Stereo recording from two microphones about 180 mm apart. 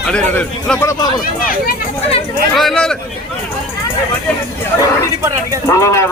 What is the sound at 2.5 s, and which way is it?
Speech, centre (ahead or behind).